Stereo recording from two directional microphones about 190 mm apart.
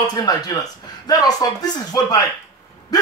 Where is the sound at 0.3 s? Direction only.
20° left (ahead or behind).